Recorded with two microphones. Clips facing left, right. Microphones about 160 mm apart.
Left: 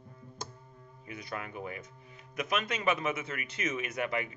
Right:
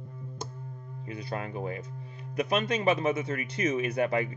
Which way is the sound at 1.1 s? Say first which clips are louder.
Right 5 dB; 30° right (ahead or behind).